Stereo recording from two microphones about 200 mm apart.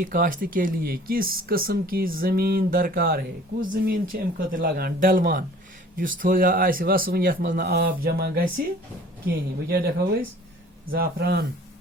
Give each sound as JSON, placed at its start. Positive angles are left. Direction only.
{"t": 0.0, "sound": "speech", "side_deg": -45}